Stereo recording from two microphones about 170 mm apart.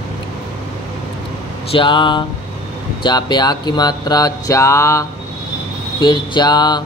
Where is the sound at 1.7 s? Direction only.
30° left (ahead or behind).